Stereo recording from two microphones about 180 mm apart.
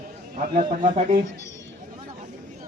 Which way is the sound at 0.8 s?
30° right (ahead or behind).